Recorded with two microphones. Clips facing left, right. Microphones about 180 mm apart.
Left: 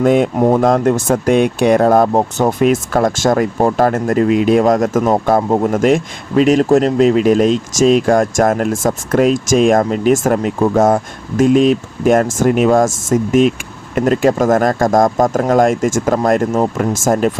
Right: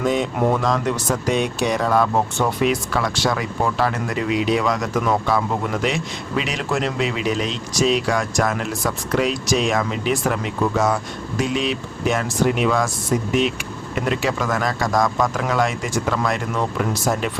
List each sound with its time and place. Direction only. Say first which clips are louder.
0.0 s speech: left 9 dB; 55° left (ahead or behind)
0.3 s speech: left 8 dB; 40° left (ahead or behind)